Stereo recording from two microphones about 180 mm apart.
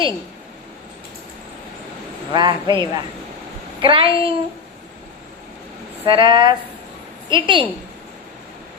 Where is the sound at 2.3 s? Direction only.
25° right (ahead or behind).